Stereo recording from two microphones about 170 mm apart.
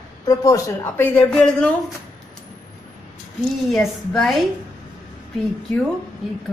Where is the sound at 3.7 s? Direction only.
5° left (ahead or behind).